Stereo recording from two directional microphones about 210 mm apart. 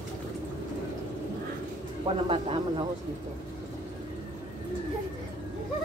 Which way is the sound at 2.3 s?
25° right (ahead or behind).